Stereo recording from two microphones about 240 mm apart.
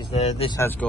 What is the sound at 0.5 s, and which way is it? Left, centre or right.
Speech, centre.